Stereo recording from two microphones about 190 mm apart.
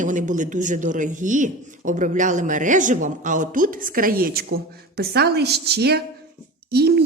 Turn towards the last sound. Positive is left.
turn(degrees=-60)  # may be behind; listen again after turning